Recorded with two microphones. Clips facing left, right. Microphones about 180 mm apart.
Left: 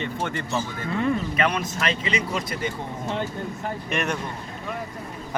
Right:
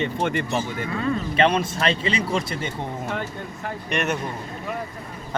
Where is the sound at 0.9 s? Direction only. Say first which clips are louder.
Left 3 dB; 20° left (ahead or behind).